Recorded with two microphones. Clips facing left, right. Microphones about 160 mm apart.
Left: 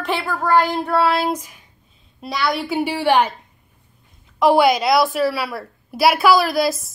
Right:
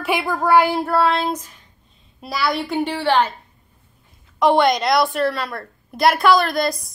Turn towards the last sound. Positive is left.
turn(degrees=5)  # may be behind; listen again after turning